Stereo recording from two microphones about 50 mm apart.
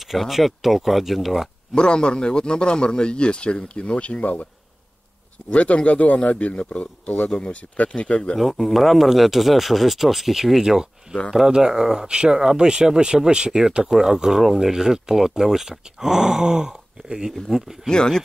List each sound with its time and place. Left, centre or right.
0.1 s speech: centre
1.8 s a man's voice: centre
5.5 s a man's voice: left
8.4 s speech: centre
17.8 s speech: centre